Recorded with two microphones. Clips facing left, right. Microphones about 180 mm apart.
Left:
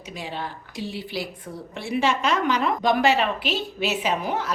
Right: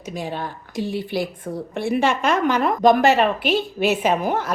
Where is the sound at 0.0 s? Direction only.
45° right (ahead or behind).